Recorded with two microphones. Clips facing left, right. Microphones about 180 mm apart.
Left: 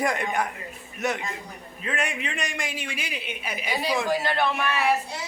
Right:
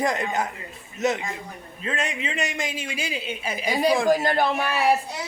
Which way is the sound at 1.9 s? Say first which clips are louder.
Right 1 dB; 25° right (ahead or behind).